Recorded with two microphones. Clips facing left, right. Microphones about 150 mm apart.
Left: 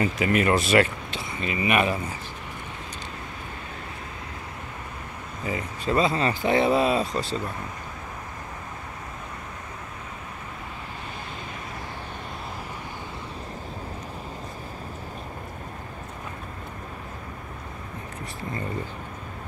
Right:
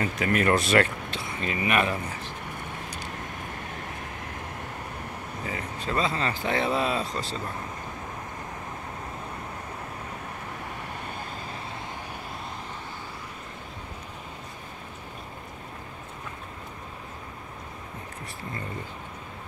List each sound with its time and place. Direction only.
0.0 s speech: 5° left (ahead or behind)
5.5 s speech: 20° left (ahead or behind)